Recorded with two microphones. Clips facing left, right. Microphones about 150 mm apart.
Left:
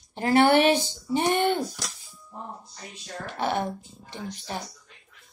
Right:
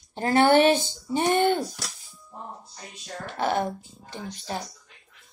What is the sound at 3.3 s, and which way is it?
Speech, 40° right (ahead or behind).